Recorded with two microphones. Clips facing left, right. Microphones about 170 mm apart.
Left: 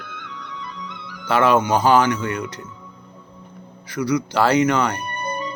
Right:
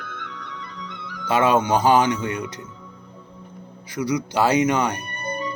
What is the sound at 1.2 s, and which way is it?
Speech, 20° right (ahead or behind).